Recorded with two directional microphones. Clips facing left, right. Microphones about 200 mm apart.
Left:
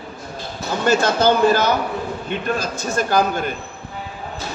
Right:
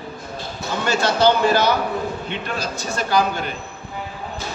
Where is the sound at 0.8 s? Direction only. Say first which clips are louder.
Left 1 dB; 45° left (ahead or behind).